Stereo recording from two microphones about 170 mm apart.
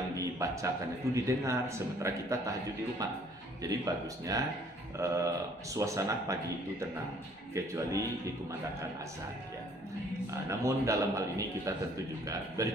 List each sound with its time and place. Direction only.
0.2 s a sound: 20° right (ahead or behind)
1.1 s a man's voice: 15° right (ahead or behind)
3.6 s a man's voice: 20° right (ahead or behind)
7.5 s a man's voice: 15° right (ahead or behind)
10.6 s a man's voice: 20° right (ahead or behind)